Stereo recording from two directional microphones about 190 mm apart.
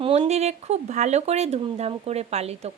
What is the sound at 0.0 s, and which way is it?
Speech, 35° right (ahead or behind).